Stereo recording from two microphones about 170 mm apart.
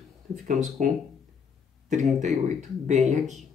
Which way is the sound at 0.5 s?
50° right (ahead or behind).